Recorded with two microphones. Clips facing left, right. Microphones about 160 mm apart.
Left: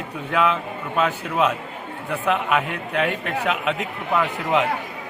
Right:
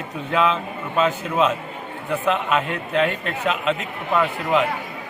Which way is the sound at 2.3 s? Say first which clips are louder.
Even; 10° left (ahead or behind).